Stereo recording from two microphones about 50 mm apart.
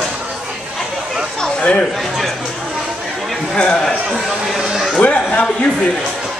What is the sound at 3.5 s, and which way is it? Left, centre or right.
Speech, centre.